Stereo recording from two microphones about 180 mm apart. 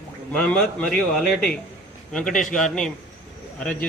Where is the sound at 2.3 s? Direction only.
45° left (ahead or behind).